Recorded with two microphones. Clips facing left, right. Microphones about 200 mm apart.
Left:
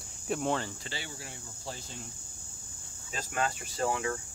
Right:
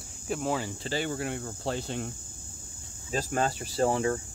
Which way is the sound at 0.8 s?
50° right (ahead or behind).